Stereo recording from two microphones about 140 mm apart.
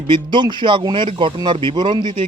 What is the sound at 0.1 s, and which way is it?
Speech, 35° right (ahead or behind).